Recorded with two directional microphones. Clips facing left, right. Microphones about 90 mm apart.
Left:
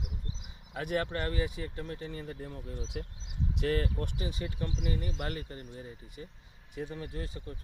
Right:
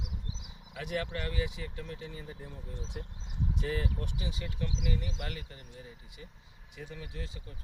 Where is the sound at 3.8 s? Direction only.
45° left (ahead or behind).